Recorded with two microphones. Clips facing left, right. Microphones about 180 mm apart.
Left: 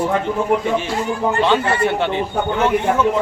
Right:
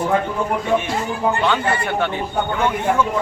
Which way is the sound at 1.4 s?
25° left (ahead or behind).